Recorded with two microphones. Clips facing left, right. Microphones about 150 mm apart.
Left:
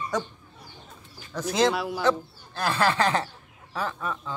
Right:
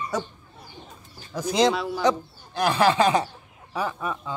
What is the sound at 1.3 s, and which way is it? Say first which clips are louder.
Speech: right 2 dB; 10° right (ahead or behind).